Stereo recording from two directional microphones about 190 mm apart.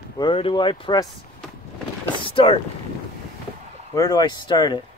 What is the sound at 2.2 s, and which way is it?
Speech, 30° left (ahead or behind).